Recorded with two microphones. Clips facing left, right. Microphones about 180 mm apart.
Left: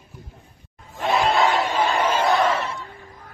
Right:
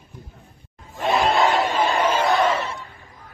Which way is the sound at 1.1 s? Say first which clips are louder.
Right 1 dB; centre (ahead or behind).